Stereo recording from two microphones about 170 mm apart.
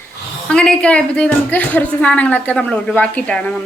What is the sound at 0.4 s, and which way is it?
A woman's voice, 5° left (ahead or behind).